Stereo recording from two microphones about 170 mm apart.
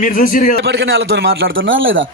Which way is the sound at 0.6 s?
75° right (ahead or behind).